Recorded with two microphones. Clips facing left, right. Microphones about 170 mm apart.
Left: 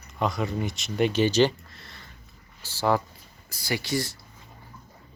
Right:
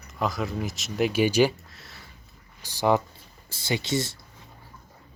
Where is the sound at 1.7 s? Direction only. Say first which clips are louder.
Even; centre (ahead or behind).